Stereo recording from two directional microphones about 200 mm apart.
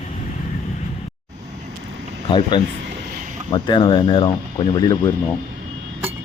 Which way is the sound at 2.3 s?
25° left (ahead or behind).